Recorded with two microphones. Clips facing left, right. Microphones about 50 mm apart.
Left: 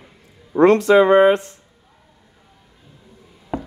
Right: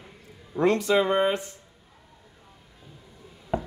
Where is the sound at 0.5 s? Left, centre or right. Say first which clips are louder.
Left 10 dB; left.